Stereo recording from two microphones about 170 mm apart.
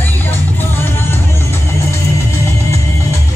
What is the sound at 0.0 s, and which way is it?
Music, 10° left (ahead or behind).